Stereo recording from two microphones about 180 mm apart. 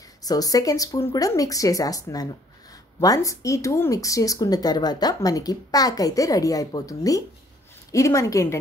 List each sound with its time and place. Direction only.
0.2 s speech: 20° left (ahead or behind)